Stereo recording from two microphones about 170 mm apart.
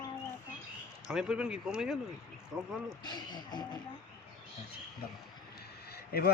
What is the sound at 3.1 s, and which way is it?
Speech, 25° left (ahead or behind).